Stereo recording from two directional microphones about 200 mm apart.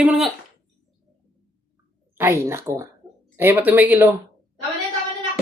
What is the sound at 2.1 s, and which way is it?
Speech, 10° right (ahead or behind).